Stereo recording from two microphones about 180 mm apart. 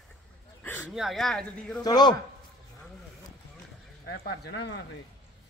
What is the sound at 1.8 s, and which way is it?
Speech, 25° left (ahead or behind).